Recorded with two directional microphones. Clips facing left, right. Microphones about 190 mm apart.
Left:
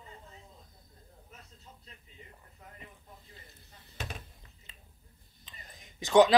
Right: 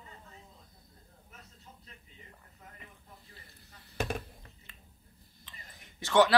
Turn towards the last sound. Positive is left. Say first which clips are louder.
# left 3 dB
turn(degrees=15)  # may be behind; listen again after turning